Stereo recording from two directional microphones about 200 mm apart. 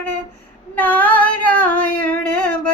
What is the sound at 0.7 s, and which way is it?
Female singing, 10° left (ahead or behind).